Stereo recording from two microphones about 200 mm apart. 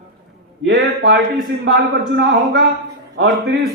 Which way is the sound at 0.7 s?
60° right (ahead or behind).